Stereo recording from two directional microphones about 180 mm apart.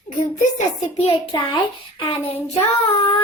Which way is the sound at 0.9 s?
35° left (ahead or behind).